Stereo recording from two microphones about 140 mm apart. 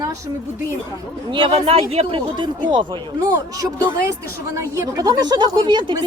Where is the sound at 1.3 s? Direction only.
40° right (ahead or behind).